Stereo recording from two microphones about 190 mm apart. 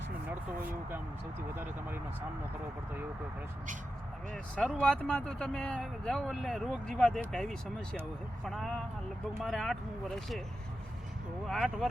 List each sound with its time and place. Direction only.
4.5 s speech: 5° left (ahead or behind)
11.4 s speech: centre (ahead or behind)